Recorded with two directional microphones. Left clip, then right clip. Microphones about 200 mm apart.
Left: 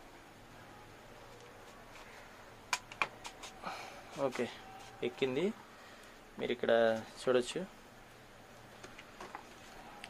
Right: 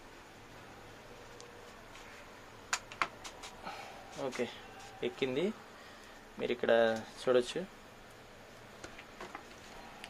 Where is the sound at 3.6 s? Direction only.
25° left (ahead or behind).